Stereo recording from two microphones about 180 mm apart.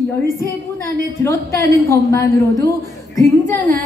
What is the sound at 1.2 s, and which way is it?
A woman's voice, 15° left (ahead or behind).